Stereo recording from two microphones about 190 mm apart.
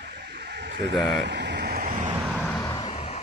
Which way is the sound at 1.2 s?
65° right (ahead or behind).